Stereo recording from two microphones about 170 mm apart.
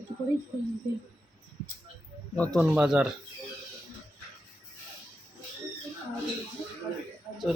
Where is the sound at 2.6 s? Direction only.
5° right (ahead or behind).